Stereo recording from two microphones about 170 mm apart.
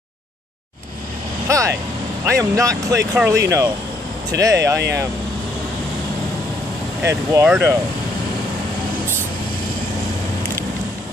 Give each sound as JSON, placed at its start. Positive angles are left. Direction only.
{"t": 1.5, "sound": "speech", "side_deg": -20}
{"t": 7.0, "sound": "speech", "side_deg": -15}